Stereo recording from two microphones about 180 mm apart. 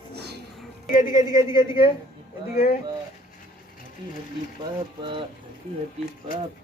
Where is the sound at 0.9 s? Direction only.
45° left (ahead or behind).